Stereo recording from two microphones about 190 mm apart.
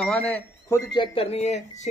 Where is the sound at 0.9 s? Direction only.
30° left (ahead or behind).